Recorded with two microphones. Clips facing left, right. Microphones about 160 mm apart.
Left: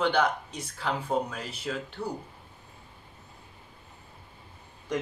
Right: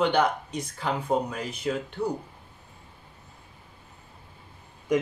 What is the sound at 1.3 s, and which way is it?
Speech, centre (ahead or behind).